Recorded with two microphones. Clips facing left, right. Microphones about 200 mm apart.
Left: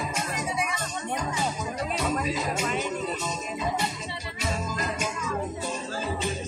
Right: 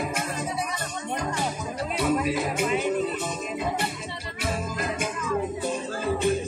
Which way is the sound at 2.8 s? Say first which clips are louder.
Right 4 dB; 55° right (ahead or behind).